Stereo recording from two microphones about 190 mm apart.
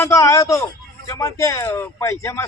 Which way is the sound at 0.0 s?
15° left (ahead or behind).